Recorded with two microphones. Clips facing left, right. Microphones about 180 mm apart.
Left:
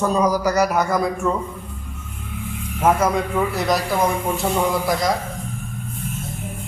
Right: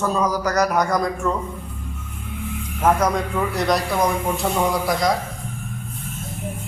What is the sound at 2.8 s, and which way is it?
A man's voice, 5° left (ahead or behind).